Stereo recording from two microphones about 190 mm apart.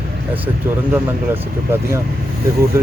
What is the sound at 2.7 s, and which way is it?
Speech, 15° right (ahead or behind).